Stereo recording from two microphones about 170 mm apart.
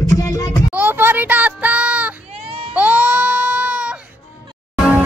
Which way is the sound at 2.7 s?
10° right (ahead or behind).